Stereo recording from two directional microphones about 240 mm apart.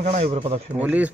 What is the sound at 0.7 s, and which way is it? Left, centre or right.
Speech, centre.